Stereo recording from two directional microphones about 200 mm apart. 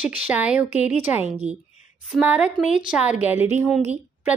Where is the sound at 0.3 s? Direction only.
5° right (ahead or behind).